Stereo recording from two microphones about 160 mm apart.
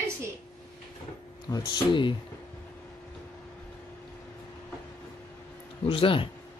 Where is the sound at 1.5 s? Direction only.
30° left (ahead or behind).